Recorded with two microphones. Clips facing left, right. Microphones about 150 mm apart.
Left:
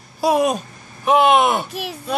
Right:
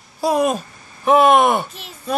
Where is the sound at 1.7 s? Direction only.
70° left (ahead or behind).